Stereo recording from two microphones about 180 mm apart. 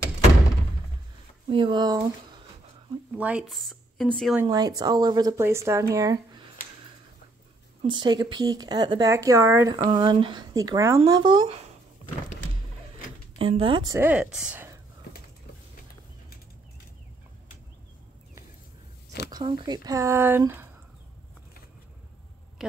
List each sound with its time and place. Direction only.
1.5 s speech: 30° right (ahead or behind)
3.2 s speech: 5° right (ahead or behind)
4.5 s speech: 20° right (ahead or behind)
7.8 s speech: 25° right (ahead or behind)
9.8 s speech: 30° right (ahead or behind)
13.4 s speech: 30° right (ahead or behind)
13.9 s speech: 10° right (ahead or behind)
19.3 s speech: 25° right (ahead or behind)
22.6 s a woman's voice: centre (ahead or behind)